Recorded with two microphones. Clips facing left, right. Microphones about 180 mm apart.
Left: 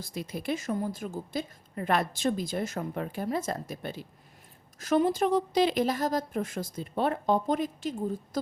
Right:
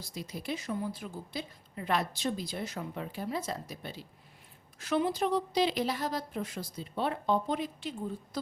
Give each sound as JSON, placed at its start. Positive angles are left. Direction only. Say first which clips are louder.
{"t": 0.0, "sound": "a woman's voice", "louder": "left 5 dB", "side_deg": 55}